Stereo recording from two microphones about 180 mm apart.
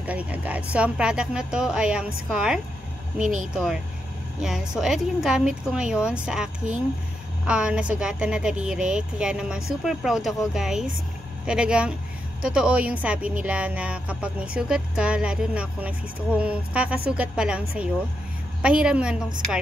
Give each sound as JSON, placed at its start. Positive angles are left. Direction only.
{"t": 0.0, "sound": "a woman's voice", "side_deg": -10}
{"t": 3.2, "sound": "speech", "side_deg": -45}
{"t": 4.4, "sound": "a woman's voice", "side_deg": 0}